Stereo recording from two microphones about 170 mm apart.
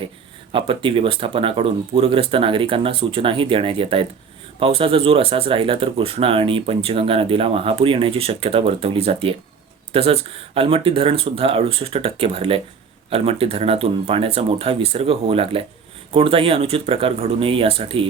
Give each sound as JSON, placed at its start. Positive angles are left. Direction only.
{"t": 0.5, "sound": "speech", "side_deg": -30}